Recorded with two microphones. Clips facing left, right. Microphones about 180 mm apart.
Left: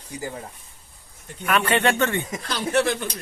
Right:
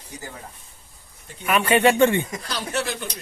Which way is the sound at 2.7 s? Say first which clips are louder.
Left 7 dB; 55° left (ahead or behind).